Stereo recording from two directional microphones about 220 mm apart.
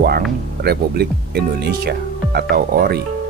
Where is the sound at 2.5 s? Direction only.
45° right (ahead or behind).